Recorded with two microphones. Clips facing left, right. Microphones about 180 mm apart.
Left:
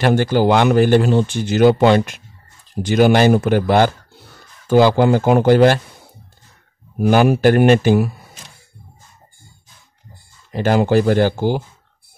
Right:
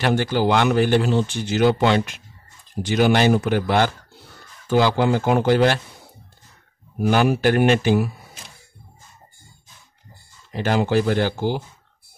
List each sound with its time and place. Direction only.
0.0 s speech: 45° left (ahead or behind)
7.0 s speech: 50° left (ahead or behind)
10.5 s speech: 45° left (ahead or behind)